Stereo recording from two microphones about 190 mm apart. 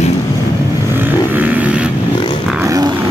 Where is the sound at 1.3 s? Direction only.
10° right (ahead or behind).